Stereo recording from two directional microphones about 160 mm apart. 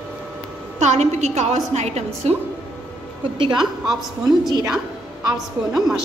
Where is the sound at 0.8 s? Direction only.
45° right (ahead or behind).